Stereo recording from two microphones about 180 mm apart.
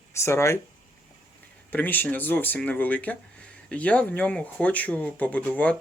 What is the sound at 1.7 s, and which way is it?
Speech, 10° left (ahead or behind).